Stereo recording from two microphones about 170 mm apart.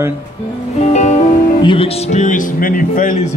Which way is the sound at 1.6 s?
30° left (ahead or behind).